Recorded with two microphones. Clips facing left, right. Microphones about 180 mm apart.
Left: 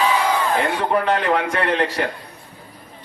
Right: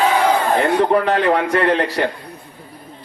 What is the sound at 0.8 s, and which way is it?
A man's voice, 40° right (ahead or behind).